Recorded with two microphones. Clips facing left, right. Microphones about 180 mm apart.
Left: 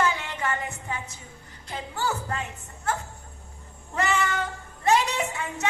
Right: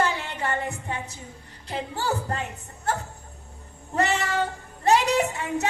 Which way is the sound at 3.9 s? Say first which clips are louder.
Right 2 dB; 35° right (ahead or behind).